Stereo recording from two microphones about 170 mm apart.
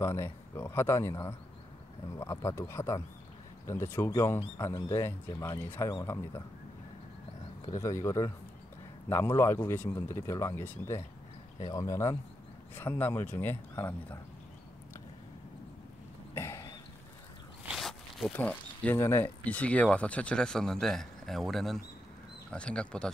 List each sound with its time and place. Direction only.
0.0 s speech: 15° left (ahead or behind)
7.8 s speech: 15° left (ahead or behind)
16.3 s cough: 15° left (ahead or behind)
17.6 s dog: centre (ahead or behind)
18.3 s speech: 10° left (ahead or behind)